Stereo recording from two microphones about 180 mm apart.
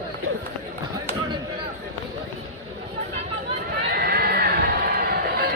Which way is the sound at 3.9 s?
60° right (ahead or behind).